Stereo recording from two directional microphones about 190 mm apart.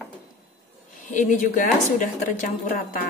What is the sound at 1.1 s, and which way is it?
Speech, 40° left (ahead or behind).